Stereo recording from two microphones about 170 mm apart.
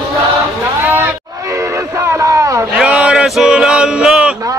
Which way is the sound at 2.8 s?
5° right (ahead or behind).